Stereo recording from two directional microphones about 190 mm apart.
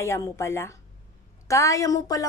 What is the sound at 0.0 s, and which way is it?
A woman's voice, 15° left (ahead or behind).